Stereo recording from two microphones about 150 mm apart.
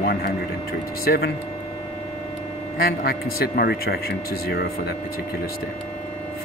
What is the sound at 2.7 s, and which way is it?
Speech, 90° left.